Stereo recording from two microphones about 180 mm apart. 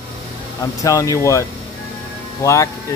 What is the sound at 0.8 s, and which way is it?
Speech, 20° left (ahead or behind).